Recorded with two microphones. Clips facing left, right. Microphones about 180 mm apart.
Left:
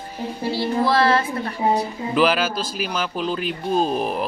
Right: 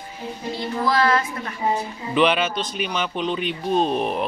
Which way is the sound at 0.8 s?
30° left (ahead or behind).